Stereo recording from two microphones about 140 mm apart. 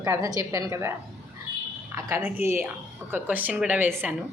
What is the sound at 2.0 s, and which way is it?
Speech, 15° right (ahead or behind).